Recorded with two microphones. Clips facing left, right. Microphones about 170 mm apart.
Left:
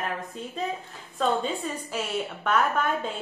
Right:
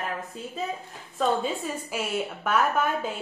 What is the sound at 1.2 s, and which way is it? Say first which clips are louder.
A woman's voice: even; 5° right (ahead or behind).